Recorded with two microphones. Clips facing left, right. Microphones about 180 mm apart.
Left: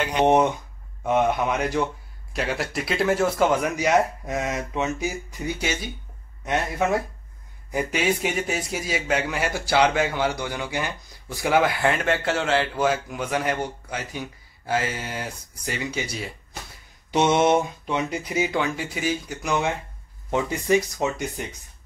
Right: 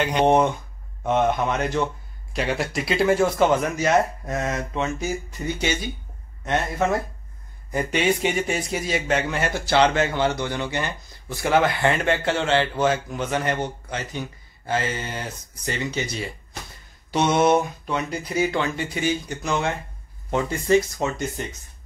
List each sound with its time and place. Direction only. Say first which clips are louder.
0.2 s a man's voice: even; 15° left (ahead or behind)
3.7 s speech: even; 15° left (ahead or behind)
17.1 s speech: even; 20° left (ahead or behind)